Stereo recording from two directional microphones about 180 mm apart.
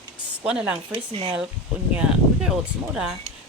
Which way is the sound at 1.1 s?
30° right (ahead or behind).